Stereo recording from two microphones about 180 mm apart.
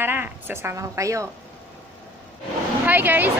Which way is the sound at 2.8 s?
10° right (ahead or behind).